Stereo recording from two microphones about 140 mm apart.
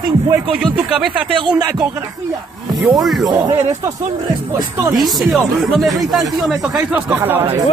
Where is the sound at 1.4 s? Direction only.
35° right (ahead or behind).